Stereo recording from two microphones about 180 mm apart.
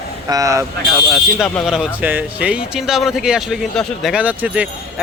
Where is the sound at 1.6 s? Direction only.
5° right (ahead or behind).